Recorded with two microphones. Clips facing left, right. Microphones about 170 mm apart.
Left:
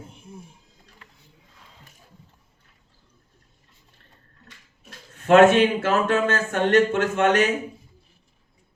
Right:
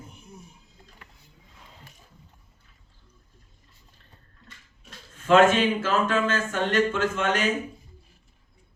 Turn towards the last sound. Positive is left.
turn(degrees=65)  # may be behind; listen again after turning